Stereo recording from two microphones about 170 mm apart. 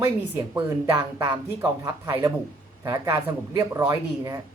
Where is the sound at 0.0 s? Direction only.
20° right (ahead or behind).